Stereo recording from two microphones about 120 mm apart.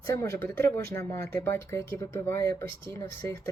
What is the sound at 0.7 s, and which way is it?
Speech, 20° left (ahead or behind).